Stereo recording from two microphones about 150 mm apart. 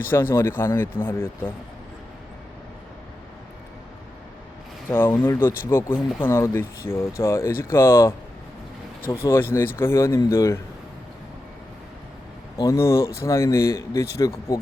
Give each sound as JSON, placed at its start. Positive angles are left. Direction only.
{"t": 0.1, "sound": "speech", "side_deg": 15}
{"t": 4.9, "sound": "speech", "side_deg": 15}
{"t": 12.6, "sound": "speech", "side_deg": 20}